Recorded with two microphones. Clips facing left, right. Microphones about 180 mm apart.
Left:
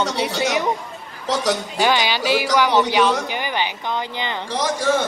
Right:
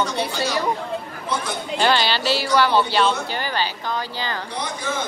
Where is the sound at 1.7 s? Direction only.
10° left (ahead or behind).